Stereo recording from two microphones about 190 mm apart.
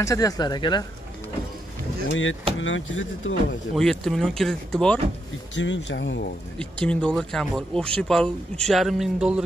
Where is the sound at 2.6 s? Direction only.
90° left.